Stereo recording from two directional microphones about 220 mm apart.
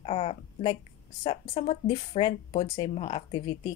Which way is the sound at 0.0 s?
25° left (ahead or behind).